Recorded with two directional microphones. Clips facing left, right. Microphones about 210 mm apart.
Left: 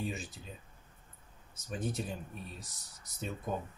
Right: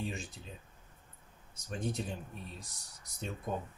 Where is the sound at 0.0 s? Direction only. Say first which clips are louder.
Left 1 dB; 5° left (ahead or behind).